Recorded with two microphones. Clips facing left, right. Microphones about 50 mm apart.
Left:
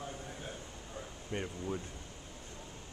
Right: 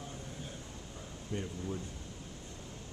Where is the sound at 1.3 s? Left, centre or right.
Left.